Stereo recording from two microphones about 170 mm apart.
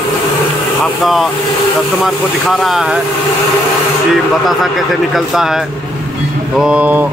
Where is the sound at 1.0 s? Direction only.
Centre (ahead or behind).